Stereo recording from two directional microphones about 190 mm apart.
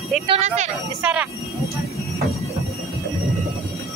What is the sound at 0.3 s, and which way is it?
Speech, 35° right (ahead or behind).